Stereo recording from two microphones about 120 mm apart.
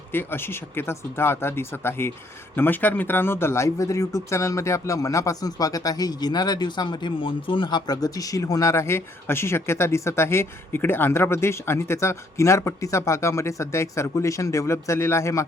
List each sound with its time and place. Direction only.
0.1 s speech: 20° left (ahead or behind)